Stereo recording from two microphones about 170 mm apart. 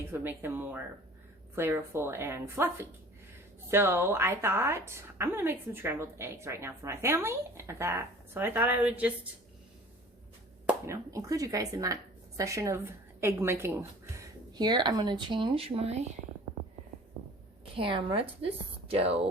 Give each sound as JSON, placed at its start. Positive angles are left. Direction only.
{"t": 0.1, "sound": "a woman's voice", "side_deg": -15}
{"t": 10.8, "sound": "speech", "side_deg": -20}
{"t": 17.7, "sound": "a woman's voice", "side_deg": -30}